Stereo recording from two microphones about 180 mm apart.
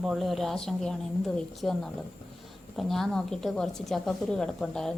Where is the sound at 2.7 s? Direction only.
Centre (ahead or behind).